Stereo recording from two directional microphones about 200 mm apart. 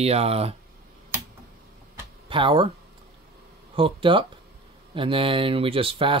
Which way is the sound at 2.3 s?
25° right (ahead or behind).